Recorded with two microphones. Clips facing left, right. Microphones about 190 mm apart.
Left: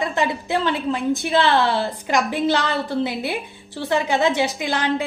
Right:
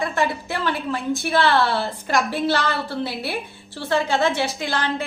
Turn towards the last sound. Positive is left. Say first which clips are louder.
# left 3 dB
turn(degrees=20)  # may be behind; listen again after turning